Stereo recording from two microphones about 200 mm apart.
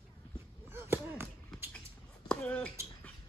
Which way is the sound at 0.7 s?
10° right (ahead or behind).